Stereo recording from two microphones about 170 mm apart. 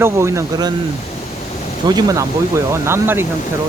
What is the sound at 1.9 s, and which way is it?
Speech, 20° right (ahead or behind).